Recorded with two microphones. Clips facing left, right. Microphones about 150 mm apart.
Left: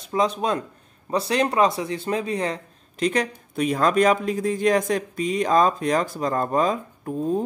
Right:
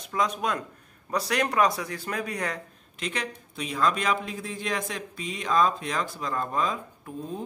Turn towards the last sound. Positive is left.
turn(degrees=45)  # may be behind; listen again after turning